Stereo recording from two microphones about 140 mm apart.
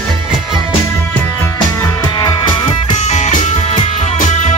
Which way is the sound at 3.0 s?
55° left (ahead or behind).